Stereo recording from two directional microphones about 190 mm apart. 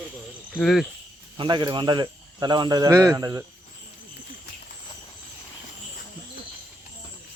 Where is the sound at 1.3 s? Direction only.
25° right (ahead or behind).